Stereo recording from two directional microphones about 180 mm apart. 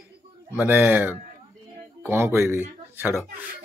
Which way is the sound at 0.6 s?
10° right (ahead or behind).